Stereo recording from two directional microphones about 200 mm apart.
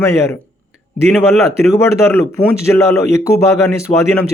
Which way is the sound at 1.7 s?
15° left (ahead or behind).